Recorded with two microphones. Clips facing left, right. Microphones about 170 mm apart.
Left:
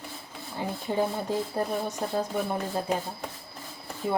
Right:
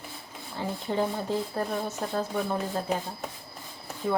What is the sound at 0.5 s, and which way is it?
Speech, 15° left (ahead or behind).